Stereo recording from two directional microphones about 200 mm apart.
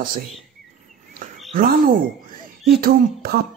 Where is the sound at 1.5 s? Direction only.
45° right (ahead or behind).